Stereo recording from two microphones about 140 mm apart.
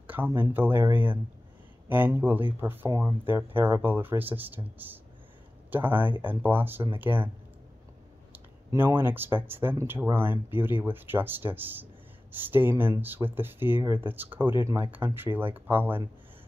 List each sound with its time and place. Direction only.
0.0 s a sound: 10° right (ahead or behind)
0.3 s speech: 15° right (ahead or behind)
8.3 s speech: 15° right (ahead or behind)